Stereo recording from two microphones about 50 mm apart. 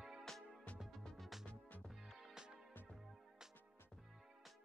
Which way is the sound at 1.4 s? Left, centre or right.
Left.